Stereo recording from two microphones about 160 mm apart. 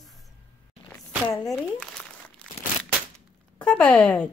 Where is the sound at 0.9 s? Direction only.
20° left (ahead or behind).